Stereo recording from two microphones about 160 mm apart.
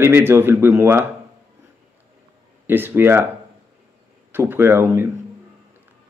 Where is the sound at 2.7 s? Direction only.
15° right (ahead or behind).